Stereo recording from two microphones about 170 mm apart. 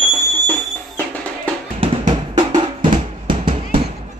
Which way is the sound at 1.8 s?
25° right (ahead or behind).